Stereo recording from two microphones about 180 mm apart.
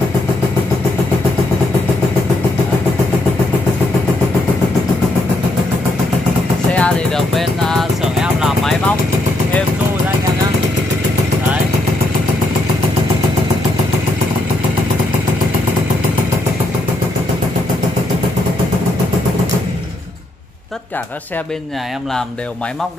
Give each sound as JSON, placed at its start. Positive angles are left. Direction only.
{"t": 6.7, "sound": "music", "side_deg": 5}